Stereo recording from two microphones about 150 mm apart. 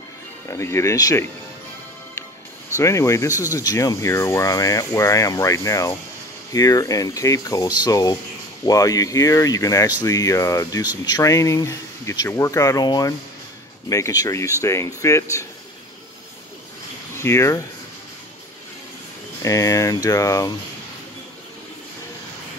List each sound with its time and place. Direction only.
0.5 s speech: 20° left (ahead or behind)
2.8 s speech: 20° left (ahead or behind)
17.2 s speech: 20° left (ahead or behind)
19.4 s speech: 20° left (ahead or behind)